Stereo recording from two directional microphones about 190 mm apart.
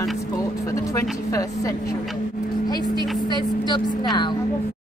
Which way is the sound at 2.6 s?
20° left (ahead or behind).